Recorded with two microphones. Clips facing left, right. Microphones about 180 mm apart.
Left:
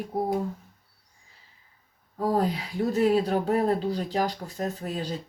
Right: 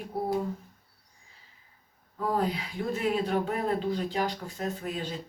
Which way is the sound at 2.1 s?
40° left (ahead or behind).